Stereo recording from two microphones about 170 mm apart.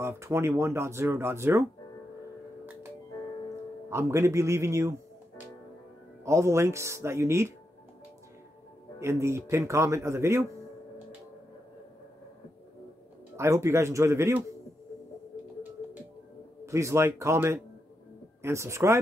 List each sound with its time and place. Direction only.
0.0 s speech: 15° right (ahead or behind)
3.9 s speech: 15° right (ahead or behind)
6.2 s speech: 15° right (ahead or behind)
9.0 s speech: 15° right (ahead or behind)
13.4 s speech: 15° right (ahead or behind)
16.6 s speech: 15° right (ahead or behind)